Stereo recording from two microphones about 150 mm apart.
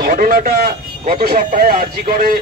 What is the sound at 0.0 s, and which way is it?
Speech, 70° right (ahead or behind).